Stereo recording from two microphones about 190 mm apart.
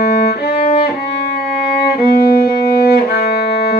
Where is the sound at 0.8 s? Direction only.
60° left (ahead or behind).